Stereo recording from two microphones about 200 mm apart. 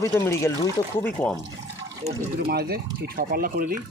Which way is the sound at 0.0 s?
15° left (ahead or behind).